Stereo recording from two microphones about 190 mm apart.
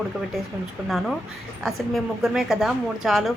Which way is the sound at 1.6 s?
Centre (ahead or behind).